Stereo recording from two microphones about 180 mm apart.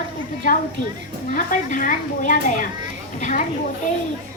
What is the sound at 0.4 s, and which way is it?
A woman's voice, 50° left (ahead or behind).